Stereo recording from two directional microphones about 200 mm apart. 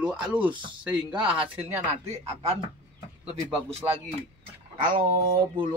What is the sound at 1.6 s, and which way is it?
Speech, 35° right (ahead or behind).